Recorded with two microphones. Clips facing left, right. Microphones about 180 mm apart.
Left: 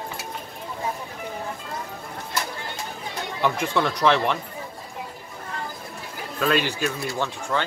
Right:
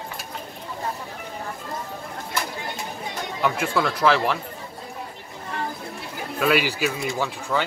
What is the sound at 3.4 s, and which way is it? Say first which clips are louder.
Speech: even; centre (ahead or behind).